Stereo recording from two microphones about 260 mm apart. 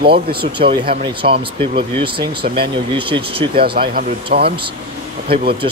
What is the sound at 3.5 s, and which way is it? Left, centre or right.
Speech, right.